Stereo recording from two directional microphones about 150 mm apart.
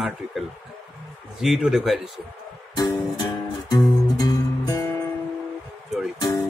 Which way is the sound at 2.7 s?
25° left (ahead or behind).